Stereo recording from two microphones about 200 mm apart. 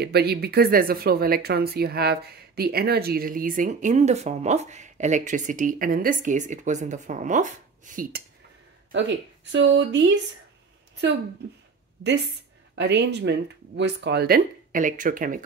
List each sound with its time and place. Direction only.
0.0 s speech: 55° right (ahead or behind)
9.5 s speech: 65° right (ahead or behind)
12.7 s speech: 60° right (ahead or behind); by 15.4 s 40° right (ahead or behind)